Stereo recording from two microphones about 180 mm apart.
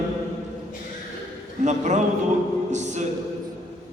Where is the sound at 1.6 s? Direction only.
40° right (ahead or behind).